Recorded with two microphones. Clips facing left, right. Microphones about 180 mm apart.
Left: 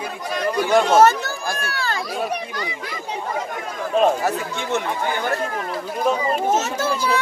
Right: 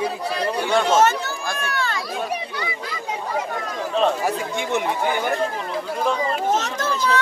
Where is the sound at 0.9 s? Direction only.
35° left (ahead or behind).